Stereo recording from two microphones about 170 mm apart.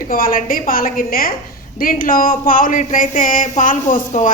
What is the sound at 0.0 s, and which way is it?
A woman's voice, 55° left (ahead or behind).